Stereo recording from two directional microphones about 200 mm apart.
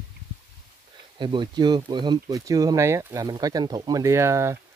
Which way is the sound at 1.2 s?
25° right (ahead or behind).